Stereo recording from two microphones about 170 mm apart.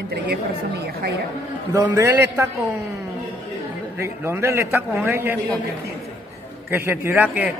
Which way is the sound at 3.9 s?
15° right (ahead or behind).